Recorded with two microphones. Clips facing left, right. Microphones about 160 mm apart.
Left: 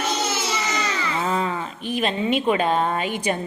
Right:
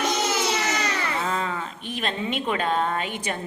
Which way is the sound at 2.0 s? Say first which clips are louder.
Left 6 dB; 10° left (ahead or behind).